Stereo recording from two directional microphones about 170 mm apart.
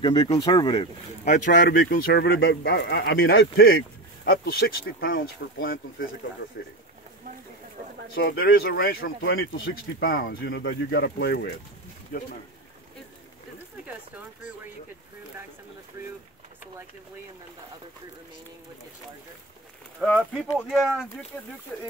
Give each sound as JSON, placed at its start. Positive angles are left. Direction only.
{"t": 0.0, "sound": "speech", "side_deg": 25}
{"t": 1.2, "sound": "speech", "side_deg": 45}
{"t": 5.4, "sound": "speech", "side_deg": 90}
{"t": 8.2, "sound": "speech", "side_deg": 75}
{"t": 12.1, "sound": "speech", "side_deg": 55}
{"t": 20.0, "sound": "speech", "side_deg": 0}